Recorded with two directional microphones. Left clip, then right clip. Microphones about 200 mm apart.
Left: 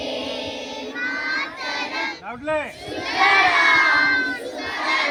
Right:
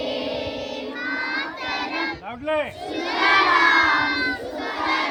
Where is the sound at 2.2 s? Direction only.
45° right (ahead or behind).